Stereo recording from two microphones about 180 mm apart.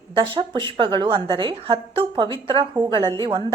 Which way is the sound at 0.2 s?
25° right (ahead or behind).